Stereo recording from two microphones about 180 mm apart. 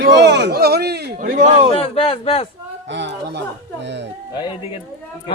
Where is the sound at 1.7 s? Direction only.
30° left (ahead or behind).